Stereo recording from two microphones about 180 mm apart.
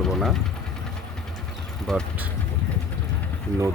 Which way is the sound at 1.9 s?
5° left (ahead or behind).